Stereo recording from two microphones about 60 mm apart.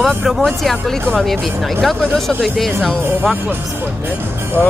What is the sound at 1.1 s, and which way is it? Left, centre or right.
Speech, centre.